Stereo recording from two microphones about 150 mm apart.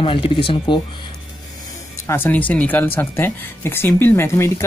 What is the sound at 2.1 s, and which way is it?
Speech, 15° left (ahead or behind).